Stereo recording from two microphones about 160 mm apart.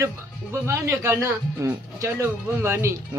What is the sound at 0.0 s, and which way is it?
Speech, 15° right (ahead or behind).